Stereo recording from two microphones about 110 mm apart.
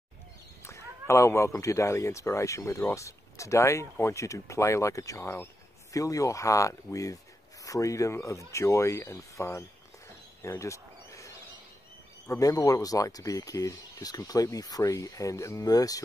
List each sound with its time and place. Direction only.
0.7 s speech: 25° left (ahead or behind)
10.4 s bird: 25° left (ahead or behind)
12.3 s speech: 30° left (ahead or behind)